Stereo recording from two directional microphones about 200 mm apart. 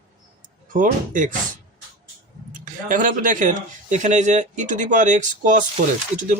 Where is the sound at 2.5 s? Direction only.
40° right (ahead or behind).